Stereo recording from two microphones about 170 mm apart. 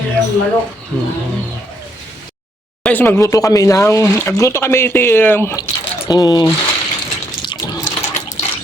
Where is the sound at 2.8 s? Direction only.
10° left (ahead or behind).